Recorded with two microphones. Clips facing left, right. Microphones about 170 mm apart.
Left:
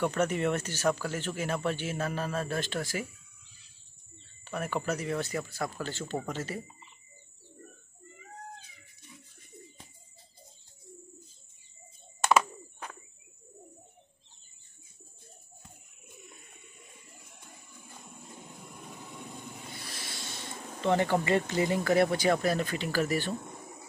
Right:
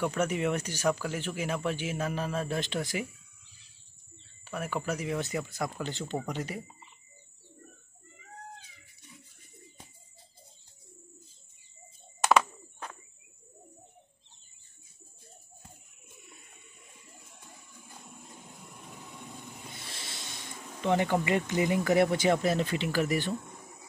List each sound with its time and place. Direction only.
0.0 s speech: 10° right (ahead or behind)
4.5 s speech: 5° right (ahead or behind)
12.3 s a sound: 5° left (ahead or behind)
19.8 s music: 25° right (ahead or behind)
20.8 s speech: 15° right (ahead or behind)